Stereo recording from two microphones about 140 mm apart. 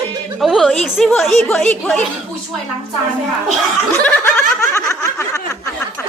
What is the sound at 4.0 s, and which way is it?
Snicker, 15° left (ahead or behind).